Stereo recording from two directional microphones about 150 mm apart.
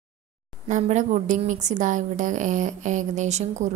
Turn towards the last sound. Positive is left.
turn(degrees=-50)  # may be behind; listen again after turning